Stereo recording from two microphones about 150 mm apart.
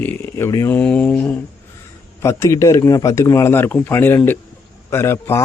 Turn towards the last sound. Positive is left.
turn(degrees=15)  # may be behind; listen again after turning